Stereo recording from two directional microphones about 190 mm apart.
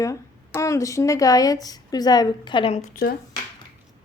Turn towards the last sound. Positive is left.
turn(degrees=50)  # may be behind; listen again after turning